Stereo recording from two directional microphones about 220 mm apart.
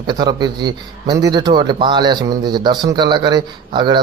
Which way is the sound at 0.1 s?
20° right (ahead or behind).